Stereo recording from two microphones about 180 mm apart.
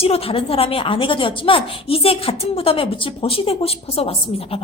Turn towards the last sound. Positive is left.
turn(degrees=30)  # may be behind; listen again after turning